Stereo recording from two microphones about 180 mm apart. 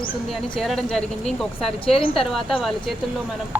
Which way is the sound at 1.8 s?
30° left (ahead or behind).